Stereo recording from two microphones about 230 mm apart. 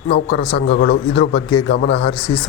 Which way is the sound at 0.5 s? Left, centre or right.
Left.